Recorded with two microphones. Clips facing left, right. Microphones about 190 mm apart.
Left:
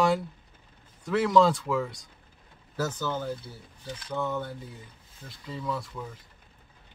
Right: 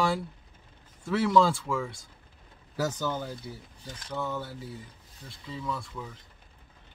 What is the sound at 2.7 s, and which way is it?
Speech, 15° right (ahead or behind).